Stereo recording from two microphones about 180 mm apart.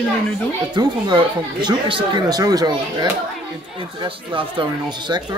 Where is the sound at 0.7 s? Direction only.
25° right (ahead or behind).